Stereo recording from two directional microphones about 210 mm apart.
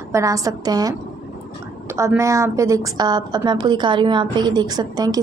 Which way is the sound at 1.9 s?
15° right (ahead or behind).